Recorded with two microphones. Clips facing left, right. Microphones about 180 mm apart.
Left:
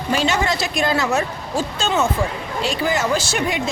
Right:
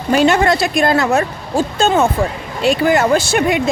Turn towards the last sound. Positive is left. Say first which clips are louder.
# right 7 dB
turn(degrees=-60)  # may be behind; listen again after turning